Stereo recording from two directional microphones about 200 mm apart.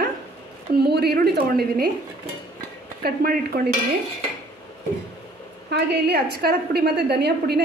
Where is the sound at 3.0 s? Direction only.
50° right (ahead or behind).